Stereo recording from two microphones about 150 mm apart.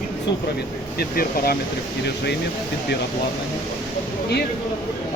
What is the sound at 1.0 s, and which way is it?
Speech, 90° left.